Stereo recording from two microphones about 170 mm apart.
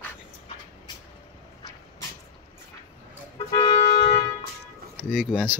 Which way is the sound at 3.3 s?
30° left (ahead or behind).